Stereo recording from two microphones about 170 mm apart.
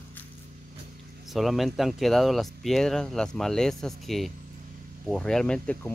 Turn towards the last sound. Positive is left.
turn(degrees=5)  # may be behind; listen again after turning